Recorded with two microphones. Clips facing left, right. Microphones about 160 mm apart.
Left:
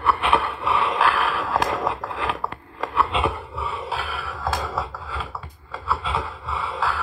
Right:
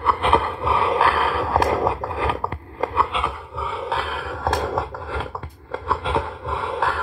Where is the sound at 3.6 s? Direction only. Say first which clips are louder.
Right 2 dB; 60° right (ahead or behind).